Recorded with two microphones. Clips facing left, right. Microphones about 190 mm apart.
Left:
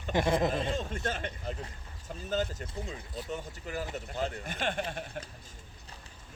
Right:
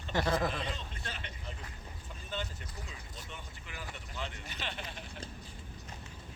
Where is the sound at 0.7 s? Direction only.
45° left (ahead or behind).